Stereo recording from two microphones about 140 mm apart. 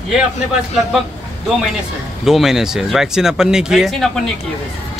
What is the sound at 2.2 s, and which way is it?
Speech, centre (ahead or behind).